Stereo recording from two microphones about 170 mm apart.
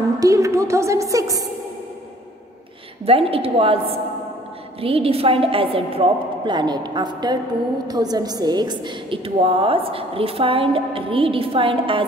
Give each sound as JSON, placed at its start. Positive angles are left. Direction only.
{"t": 0.2, "sound": "a woman's voice", "side_deg": -20}
{"t": 3.1, "sound": "a woman's voice", "side_deg": -35}